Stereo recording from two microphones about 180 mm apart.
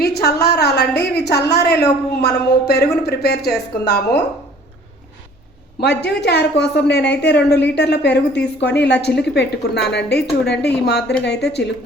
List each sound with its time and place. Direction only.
0.0 s a woman's voice: 60° left (ahead or behind)
5.8 s speech: 65° left (ahead or behind)